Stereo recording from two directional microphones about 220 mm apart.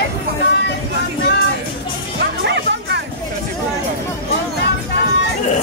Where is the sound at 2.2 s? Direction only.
50° right (ahead or behind).